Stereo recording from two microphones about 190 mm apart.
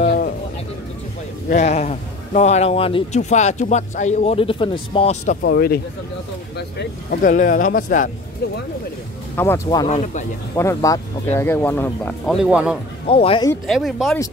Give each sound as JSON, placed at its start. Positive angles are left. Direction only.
{"t": 0.0, "sound": "a sound", "side_deg": 50}
{"t": 1.5, "sound": "speech", "side_deg": 35}
{"t": 5.4, "sound": "speech", "side_deg": 55}
{"t": 9.4, "sound": "speech", "side_deg": 15}
{"t": 9.8, "sound": "speech", "side_deg": 35}
{"t": 10.5, "sound": "speech", "side_deg": 15}
{"t": 13.0, "sound": "speech", "side_deg": 30}
{"t": 13.7, "sound": "speech", "side_deg": 0}